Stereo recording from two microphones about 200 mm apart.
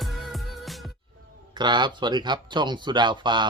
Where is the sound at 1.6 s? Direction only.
20° right (ahead or behind).